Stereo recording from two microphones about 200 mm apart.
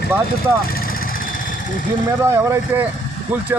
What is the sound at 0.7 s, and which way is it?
Vehicle, 45° left (ahead or behind).